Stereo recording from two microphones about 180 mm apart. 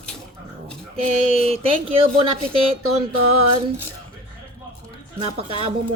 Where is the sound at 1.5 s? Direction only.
30° right (ahead or behind).